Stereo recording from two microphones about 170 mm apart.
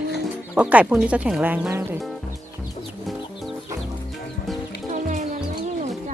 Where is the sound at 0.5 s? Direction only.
10° right (ahead or behind).